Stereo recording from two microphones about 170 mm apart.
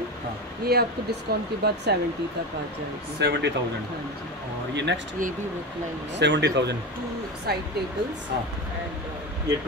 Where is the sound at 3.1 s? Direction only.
90° right.